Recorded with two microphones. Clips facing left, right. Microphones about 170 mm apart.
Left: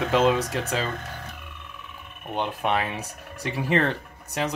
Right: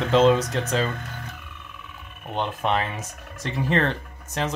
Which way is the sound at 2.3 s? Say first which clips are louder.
Right 1 dB; 10° left (ahead or behind).